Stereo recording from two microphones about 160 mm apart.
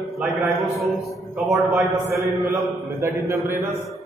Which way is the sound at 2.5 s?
15° right (ahead or behind).